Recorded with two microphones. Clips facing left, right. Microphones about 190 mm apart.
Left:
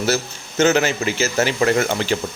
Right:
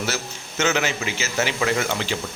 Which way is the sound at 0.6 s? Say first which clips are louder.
Left 6 dB; 40° left (ahead or behind).